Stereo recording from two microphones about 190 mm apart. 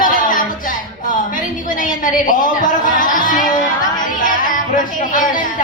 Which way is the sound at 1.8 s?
45° left (ahead or behind).